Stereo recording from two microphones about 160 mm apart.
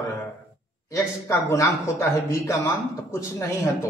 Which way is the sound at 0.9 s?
20° left (ahead or behind).